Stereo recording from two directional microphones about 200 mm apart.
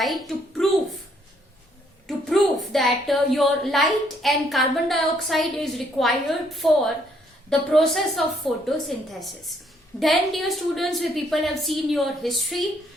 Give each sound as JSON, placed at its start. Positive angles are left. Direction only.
{"t": 0.0, "sound": "a woman's voice", "side_deg": 0}
{"t": 2.0, "sound": "a woman's voice", "side_deg": 0}